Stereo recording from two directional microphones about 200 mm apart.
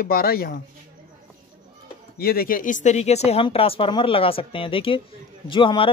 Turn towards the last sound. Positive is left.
turn(degrees=25)  # may be behind; listen again after turning